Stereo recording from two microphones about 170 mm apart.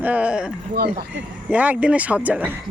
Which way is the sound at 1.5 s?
10° right (ahead or behind).